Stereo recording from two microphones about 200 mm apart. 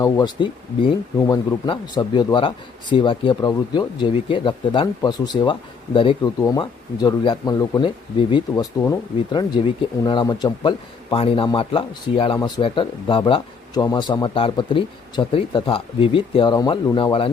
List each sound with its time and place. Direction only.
0.0 s speech: 20° left (ahead or behind)